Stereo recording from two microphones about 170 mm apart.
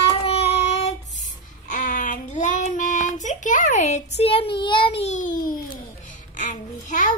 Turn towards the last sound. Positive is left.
turn(degrees=50)  # may be behind; listen again after turning